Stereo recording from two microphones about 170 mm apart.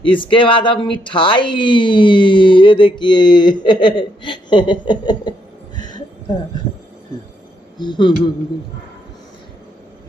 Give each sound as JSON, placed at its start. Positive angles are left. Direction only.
{"t": 0.0, "sound": "speech", "side_deg": 30}
{"t": 5.8, "sound": "a sound", "side_deg": 25}
{"t": 7.7, "sound": "speech", "side_deg": 25}